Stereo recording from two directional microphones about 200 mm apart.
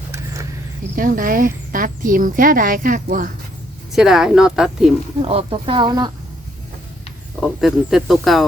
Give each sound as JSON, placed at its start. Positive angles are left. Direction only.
{"t": 0.9, "sound": "speech", "side_deg": -45}
{"t": 3.9, "sound": "speech", "side_deg": 0}
{"t": 5.2, "sound": "speech", "side_deg": -30}
{"t": 7.6, "sound": "speech", "side_deg": 0}